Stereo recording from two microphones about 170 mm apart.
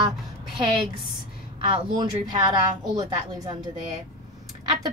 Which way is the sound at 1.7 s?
25° right (ahead or behind).